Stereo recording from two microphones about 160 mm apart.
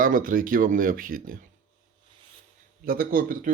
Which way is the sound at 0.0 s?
60° right (ahead or behind).